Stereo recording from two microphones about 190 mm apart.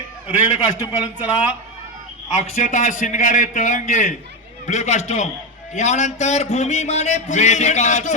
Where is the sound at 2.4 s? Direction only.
40° left (ahead or behind).